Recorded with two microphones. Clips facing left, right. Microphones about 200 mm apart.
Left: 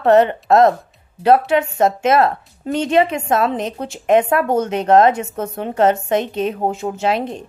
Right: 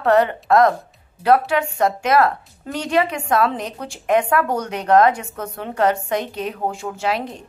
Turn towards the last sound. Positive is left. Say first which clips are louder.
# left 4 dB
turn(degrees=25)  # may be behind; listen again after turning